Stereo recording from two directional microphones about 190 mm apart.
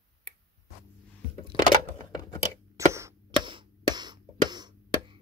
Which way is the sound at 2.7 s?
15° right (ahead or behind).